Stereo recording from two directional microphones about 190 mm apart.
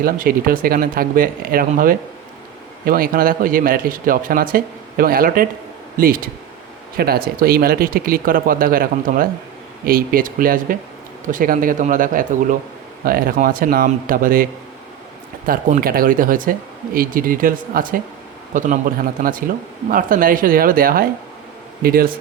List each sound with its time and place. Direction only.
0.0 s a man's voice: 50° right (ahead or behind)
15.4 s a man's voice: 50° right (ahead or behind)